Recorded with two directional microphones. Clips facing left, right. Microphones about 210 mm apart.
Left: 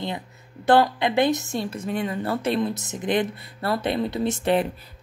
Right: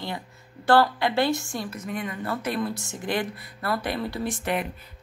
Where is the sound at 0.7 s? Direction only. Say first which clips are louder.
Left 2 dB; 20° left (ahead or behind).